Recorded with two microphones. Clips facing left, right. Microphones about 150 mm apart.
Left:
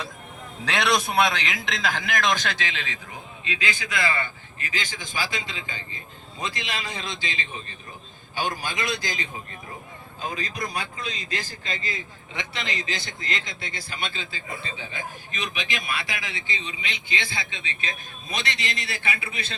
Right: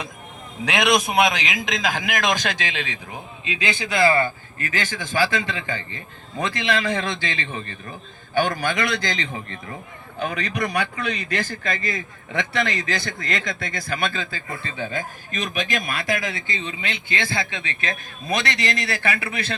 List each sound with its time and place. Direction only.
0.6 s a man's voice: 15° right (ahead or behind); by 4.3 s 30° right (ahead or behind)
4.9 s a man's voice: 15° left (ahead or behind)
5.5 s a man's voice: 65° right (ahead or behind)